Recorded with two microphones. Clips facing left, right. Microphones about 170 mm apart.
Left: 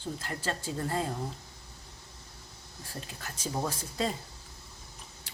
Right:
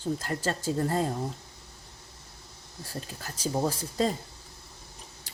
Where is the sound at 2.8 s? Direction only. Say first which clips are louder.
Right 4 dB; 35° right (ahead or behind).